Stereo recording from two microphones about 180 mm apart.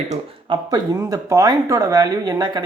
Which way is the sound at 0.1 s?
30° right (ahead or behind).